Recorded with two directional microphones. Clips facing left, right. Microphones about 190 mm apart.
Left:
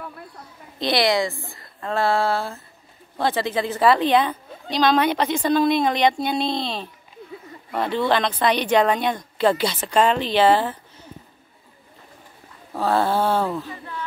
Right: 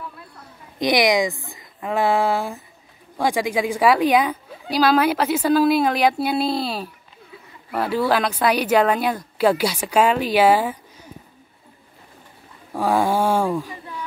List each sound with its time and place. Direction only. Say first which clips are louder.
0.7 s speech: right 2 dB; 15° right (ahead or behind)
12.7 s speech: right 1 dB; 10° right (ahead or behind)